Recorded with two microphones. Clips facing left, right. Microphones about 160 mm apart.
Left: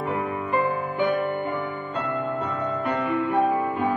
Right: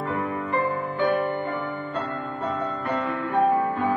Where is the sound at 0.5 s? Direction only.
20° left (ahead or behind).